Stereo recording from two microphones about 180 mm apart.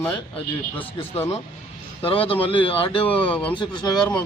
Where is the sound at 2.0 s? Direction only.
30° left (ahead or behind).